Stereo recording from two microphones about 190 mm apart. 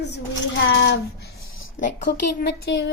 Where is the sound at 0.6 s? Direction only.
70° left (ahead or behind).